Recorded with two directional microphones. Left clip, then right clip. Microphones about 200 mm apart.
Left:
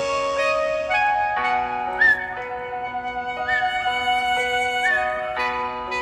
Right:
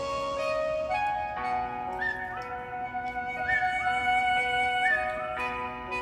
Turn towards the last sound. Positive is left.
turn(degrees=40)  # may be behind; listen again after turning